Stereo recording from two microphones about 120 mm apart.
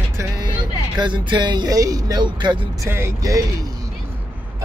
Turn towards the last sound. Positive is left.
turn(degrees=-30)  # may be behind; listen again after turning